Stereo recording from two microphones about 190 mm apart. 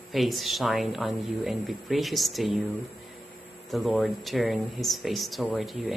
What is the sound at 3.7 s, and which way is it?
A man's voice, centre (ahead or behind).